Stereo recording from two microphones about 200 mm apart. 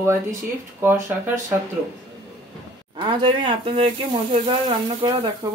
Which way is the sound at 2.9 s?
25° right (ahead or behind).